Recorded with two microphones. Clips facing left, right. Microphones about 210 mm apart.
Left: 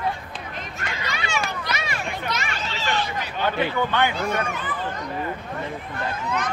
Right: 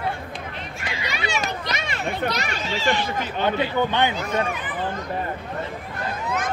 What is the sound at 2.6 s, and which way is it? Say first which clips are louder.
Hubbub: right 4 dB; 15° right (ahead or behind).